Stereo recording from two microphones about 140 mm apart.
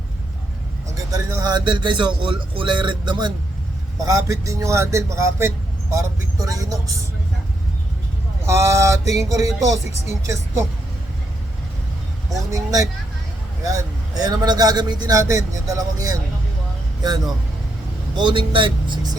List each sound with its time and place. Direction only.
1.1 s a man's voice: 25° right (ahead or behind)
8.4 s a man's voice: 20° right (ahead or behind)
12.5 s a man's voice: 25° right (ahead or behind)